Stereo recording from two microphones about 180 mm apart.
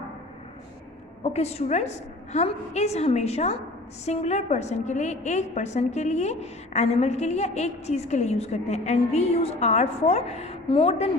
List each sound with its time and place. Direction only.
1.2 s a woman's voice: 35° left (ahead or behind)